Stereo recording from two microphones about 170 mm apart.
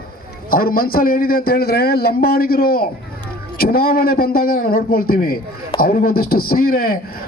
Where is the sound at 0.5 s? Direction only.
60° left (ahead or behind).